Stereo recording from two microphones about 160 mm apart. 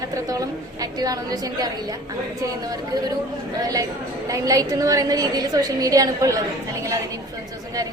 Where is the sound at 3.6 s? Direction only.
20° right (ahead or behind).